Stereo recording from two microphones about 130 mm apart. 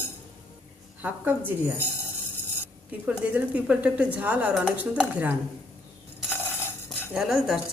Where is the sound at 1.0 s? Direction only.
15° right (ahead or behind).